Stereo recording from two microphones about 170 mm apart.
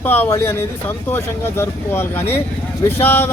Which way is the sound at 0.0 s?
10° left (ahead or behind).